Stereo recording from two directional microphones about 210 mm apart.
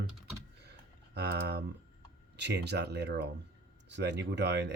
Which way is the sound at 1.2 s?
50° right (ahead or behind).